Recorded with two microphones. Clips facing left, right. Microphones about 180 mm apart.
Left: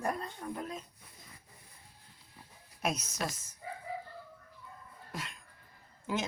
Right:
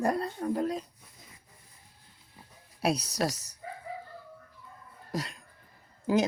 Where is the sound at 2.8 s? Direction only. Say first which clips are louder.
Right 6 dB; 35° right (ahead or behind).